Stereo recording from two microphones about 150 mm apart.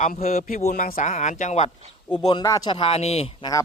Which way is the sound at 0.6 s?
60° left (ahead or behind).